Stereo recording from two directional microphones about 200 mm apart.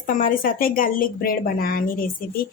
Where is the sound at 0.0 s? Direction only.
40° left (ahead or behind).